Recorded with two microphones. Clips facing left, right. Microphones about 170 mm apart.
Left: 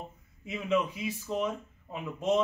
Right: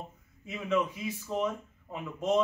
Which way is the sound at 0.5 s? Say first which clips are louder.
Left 1 dB; 10° left (ahead or behind).